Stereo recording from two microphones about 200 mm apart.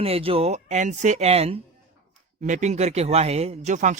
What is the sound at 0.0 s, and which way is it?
Speech, 30° right (ahead or behind).